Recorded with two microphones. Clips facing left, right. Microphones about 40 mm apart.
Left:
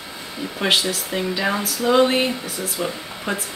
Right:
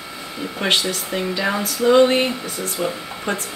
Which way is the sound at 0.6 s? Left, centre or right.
Centre.